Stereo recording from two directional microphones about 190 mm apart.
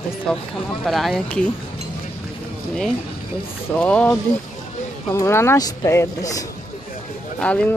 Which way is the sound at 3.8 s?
5° left (ahead or behind).